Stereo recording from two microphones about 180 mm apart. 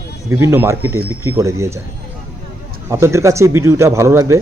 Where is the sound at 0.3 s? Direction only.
15° right (ahead or behind).